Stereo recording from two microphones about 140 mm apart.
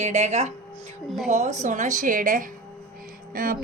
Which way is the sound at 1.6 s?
60° right (ahead or behind).